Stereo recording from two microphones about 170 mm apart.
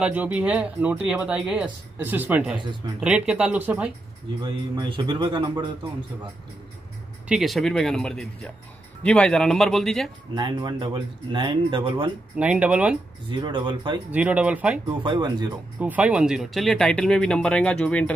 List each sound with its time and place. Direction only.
0.0 s speech: 10° right (ahead or behind)
4.7 s speech: 25° right (ahead or behind)
7.2 s speech: centre (ahead or behind)
10.3 s speech: 25° right (ahead or behind)
12.4 s speech: 5° right (ahead or behind)
13.3 s speech: 25° right (ahead or behind)
14.1 s speech: 5° right (ahead or behind)
14.9 s speech: 25° right (ahead or behind)
15.8 s speech: 10° right (ahead or behind); by 18.1 s 5° left (ahead or behind)